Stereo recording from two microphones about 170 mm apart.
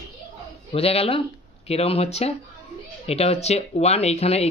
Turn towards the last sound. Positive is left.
turn(degrees=40)  # may be behind; listen again after turning